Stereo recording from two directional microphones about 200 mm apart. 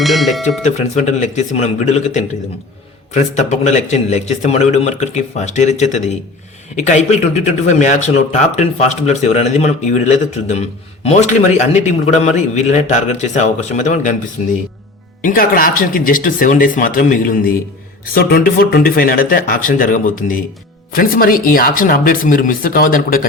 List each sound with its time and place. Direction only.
0.0 s speech: centre (ahead or behind)
0.6 s a man's voice: 35° left (ahead or behind)
15.2 s speech: 45° left (ahead or behind)